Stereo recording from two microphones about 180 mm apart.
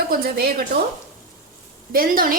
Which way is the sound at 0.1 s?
55° right (ahead or behind).